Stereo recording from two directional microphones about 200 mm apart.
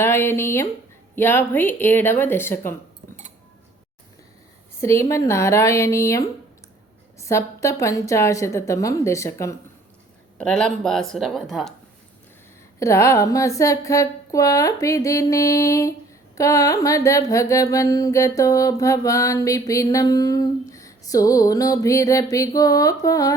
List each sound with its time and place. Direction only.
0.0 s mantra: 10° left (ahead or behind)
4.8 s mantra: 15° left (ahead or behind)
7.3 s mantra: 15° left (ahead or behind)
10.3 s speech: 5° left (ahead or behind)
12.8 s mantra: 15° left (ahead or behind)